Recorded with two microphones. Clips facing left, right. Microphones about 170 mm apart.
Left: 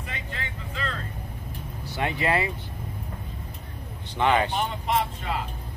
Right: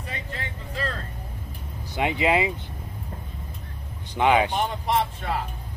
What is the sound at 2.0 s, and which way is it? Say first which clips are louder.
Speech: right 3 dB; 15° right (ahead or behind).